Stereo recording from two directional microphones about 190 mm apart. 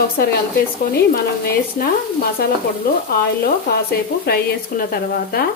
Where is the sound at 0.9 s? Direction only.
55° left (ahead or behind).